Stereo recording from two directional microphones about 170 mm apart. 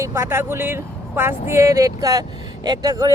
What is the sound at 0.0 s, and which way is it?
Speech, 15° right (ahead or behind).